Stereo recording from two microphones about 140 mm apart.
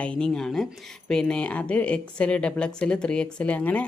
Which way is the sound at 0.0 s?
5° left (ahead or behind).